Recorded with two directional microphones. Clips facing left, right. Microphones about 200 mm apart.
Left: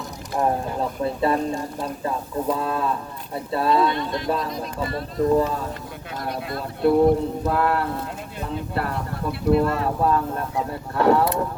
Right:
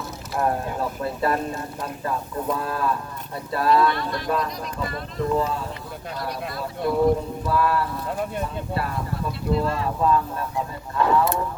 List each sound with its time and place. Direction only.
0.3 s speech: 20° left (ahead or behind)
4.9 s speech: 35° left (ahead or behind)
6.1 s speech: 55° left (ahead or behind)